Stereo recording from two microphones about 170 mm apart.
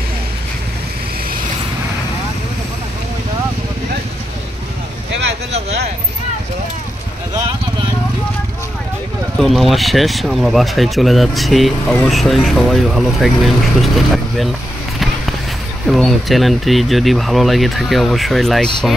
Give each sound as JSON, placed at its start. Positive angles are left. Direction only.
{"t": 9.4, "sound": "speech", "side_deg": 0}
{"t": 15.9, "sound": "speech", "side_deg": 0}